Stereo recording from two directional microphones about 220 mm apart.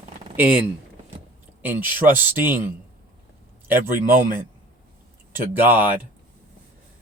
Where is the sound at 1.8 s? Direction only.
40° right (ahead or behind).